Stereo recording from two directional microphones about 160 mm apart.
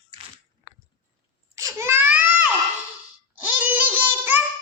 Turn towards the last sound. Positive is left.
turn(degrees=-10)  # may be behind; listen again after turning